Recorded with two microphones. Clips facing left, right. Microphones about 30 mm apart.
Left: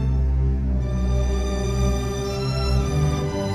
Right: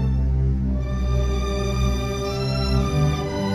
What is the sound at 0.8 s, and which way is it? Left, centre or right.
Music, centre.